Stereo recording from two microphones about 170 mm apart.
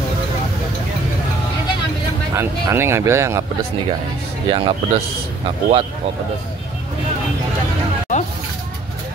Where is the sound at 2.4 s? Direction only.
15° right (ahead or behind).